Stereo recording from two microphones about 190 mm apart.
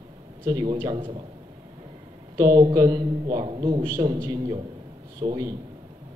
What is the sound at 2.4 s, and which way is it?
A man's voice, 20° right (ahead or behind).